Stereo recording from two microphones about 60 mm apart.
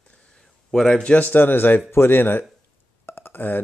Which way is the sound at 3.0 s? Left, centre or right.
Left.